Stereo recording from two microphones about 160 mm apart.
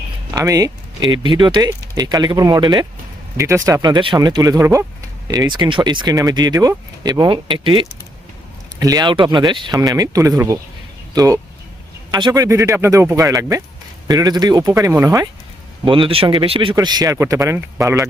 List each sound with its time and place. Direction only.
0.3 s speech: 20° right (ahead or behind)
15.8 s speech: 30° right (ahead or behind)